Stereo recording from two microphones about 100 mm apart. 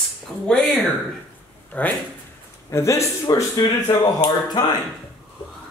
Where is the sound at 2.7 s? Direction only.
30° left (ahead or behind).